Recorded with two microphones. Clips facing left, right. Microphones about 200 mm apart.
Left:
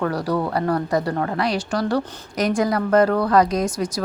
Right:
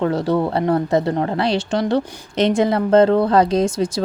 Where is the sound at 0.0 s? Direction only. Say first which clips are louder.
Right 4 dB; 25° right (ahead or behind).